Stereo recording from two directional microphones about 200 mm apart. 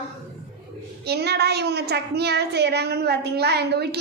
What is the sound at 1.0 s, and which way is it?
A woman's voice, 55° right (ahead or behind).